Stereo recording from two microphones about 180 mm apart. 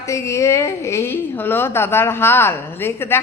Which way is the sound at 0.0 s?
15° left (ahead or behind).